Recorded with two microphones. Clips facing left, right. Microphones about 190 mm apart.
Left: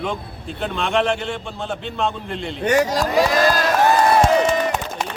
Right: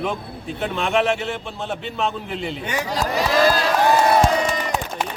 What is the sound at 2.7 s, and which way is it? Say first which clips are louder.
Speech: left 10 dB; 45° left (ahead or behind).